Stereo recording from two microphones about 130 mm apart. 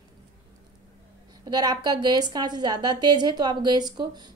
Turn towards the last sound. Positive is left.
turn(degrees=-30)  # may be behind; listen again after turning